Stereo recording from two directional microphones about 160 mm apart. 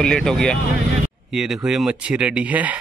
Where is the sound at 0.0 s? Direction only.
5° left (ahead or behind).